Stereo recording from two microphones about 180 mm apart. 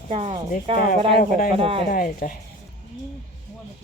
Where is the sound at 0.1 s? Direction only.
35° right (ahead or behind).